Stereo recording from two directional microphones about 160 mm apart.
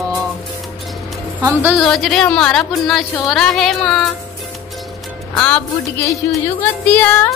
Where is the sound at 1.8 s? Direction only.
5° left (ahead or behind).